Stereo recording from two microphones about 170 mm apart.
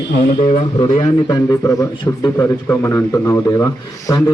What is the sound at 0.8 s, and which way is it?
A man's voice, 30° left (ahead or behind).